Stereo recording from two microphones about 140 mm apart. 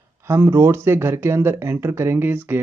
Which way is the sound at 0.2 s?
20° right (ahead or behind).